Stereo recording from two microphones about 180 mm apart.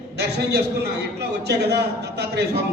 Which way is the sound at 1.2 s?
65° right (ahead or behind).